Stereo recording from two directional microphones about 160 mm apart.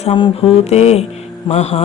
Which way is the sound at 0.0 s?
30° left (ahead or behind).